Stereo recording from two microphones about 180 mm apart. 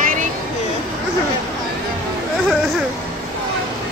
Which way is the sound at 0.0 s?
45° right (ahead or behind).